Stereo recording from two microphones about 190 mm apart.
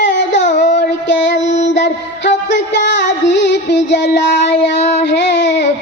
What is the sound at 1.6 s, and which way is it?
Music, 70° left (ahead or behind).